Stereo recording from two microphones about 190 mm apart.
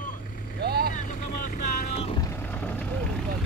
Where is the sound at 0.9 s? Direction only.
40° left (ahead or behind).